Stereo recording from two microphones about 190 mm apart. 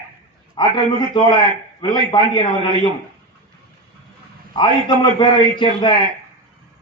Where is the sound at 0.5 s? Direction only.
25° left (ahead or behind).